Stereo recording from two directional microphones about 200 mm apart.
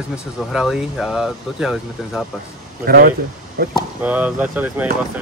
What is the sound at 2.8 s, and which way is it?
Speech, 50° right (ahead or behind).